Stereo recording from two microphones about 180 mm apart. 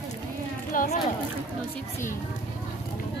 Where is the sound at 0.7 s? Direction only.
50° left (ahead or behind).